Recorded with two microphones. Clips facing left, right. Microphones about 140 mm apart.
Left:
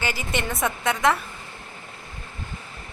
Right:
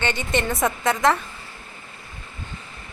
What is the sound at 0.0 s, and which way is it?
A woman's voice, 5° left (ahead or behind).